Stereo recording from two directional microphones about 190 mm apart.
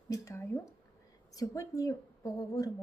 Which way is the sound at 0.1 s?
15° left (ahead or behind).